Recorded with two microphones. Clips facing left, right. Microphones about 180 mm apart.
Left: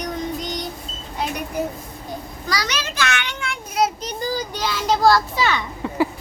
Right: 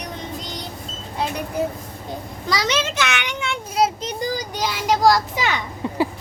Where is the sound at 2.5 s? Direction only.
25° right (ahead or behind).